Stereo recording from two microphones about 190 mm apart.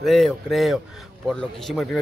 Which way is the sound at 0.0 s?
Centre (ahead or behind).